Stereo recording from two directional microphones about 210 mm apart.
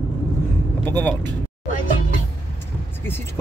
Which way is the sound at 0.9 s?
5° left (ahead or behind).